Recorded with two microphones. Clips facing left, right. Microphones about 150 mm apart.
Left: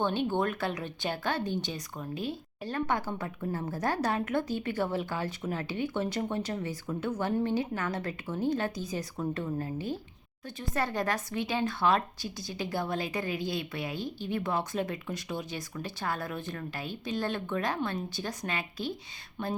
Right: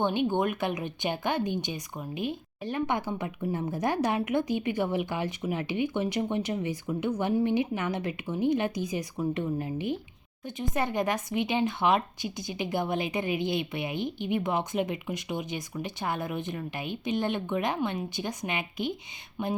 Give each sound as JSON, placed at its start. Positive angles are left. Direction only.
{"t": 0.0, "sound": "speech", "side_deg": -15}